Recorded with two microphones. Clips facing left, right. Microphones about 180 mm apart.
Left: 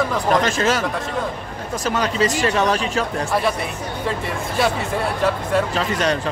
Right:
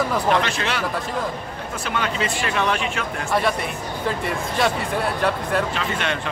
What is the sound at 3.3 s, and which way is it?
Speech, centre (ahead or behind).